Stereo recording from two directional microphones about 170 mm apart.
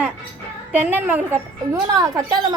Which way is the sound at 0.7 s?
10° right (ahead or behind).